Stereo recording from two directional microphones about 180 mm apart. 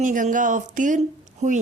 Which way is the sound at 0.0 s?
45° right (ahead or behind).